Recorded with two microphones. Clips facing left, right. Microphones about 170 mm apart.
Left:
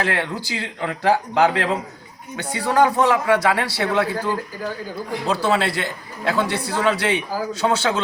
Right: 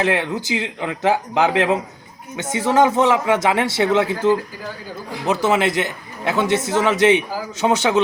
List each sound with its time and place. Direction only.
0.0 s a man's voice: 20° right (ahead or behind)